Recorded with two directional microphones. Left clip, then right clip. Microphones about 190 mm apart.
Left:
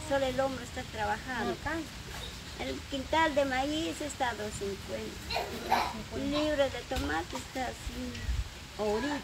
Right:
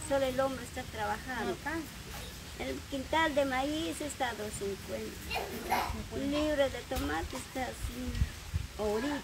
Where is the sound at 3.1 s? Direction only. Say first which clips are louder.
Left 2 dB; 5° right (ahead or behind).